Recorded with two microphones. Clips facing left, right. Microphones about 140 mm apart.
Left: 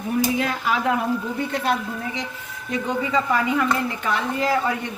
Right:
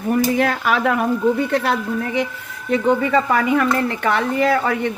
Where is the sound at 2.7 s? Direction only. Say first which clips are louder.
Right 7 dB; 65° right (ahead or behind).